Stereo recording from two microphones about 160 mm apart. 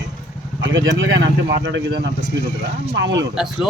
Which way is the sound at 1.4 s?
90° right.